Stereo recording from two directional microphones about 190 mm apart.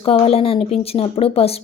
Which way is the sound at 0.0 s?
30° left (ahead or behind).